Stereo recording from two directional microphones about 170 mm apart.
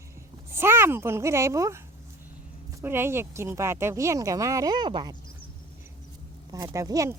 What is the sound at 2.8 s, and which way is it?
Speech, 15° right (ahead or behind).